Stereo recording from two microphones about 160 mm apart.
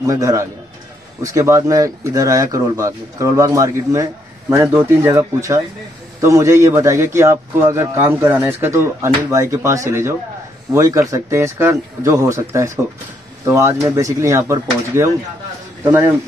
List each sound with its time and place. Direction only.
0.0 s a man's voice: 20° right (ahead or behind)